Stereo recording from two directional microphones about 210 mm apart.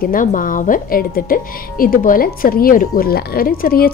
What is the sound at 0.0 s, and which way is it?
Speech, 40° left (ahead or behind).